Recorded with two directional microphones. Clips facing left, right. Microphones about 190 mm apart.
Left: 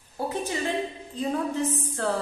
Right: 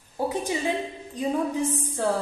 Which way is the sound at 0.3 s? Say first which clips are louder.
Even; 15° right (ahead or behind).